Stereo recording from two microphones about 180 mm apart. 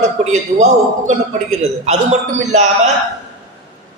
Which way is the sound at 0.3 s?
40° right (ahead or behind).